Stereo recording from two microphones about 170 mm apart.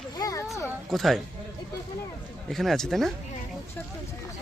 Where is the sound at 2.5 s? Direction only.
Centre (ahead or behind).